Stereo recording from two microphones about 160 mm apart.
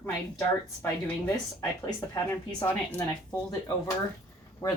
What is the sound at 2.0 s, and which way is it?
Speech, 20° left (ahead or behind).